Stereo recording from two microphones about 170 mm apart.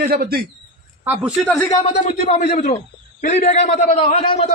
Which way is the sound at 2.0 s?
45° left (ahead or behind).